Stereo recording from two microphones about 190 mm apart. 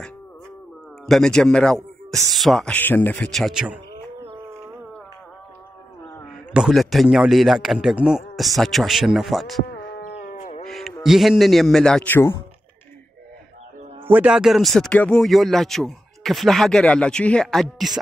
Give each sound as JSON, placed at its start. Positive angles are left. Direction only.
{"t": 1.0, "sound": "speech", "side_deg": 0}
{"t": 6.5, "sound": "speech", "side_deg": 0}
{"t": 10.1, "sound": "livestock", "side_deg": 45}
{"t": 10.6, "sound": "a man's voice", "side_deg": 0}
{"t": 14.0, "sound": "speech", "side_deg": -5}